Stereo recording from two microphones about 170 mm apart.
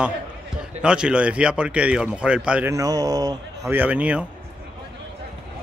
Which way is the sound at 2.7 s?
20° right (ahead or behind).